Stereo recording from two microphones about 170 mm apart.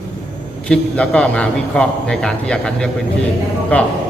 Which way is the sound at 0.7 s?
5° left (ahead or behind).